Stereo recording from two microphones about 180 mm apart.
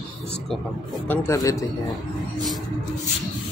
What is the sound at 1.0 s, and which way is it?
Speech, 15° left (ahead or behind).